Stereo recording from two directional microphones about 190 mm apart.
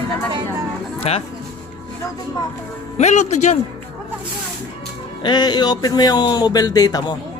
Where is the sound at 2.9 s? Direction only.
40° left (ahead or behind).